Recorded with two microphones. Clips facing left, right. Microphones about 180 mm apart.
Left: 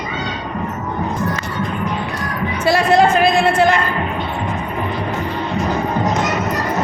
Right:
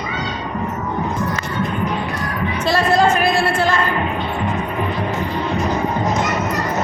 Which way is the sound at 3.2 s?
20° left (ahead or behind).